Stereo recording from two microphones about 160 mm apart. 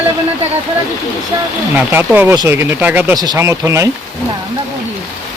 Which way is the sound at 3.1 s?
25° right (ahead or behind).